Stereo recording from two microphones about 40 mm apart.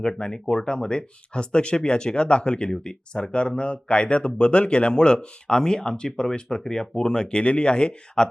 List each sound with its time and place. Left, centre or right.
0.2 s speech: left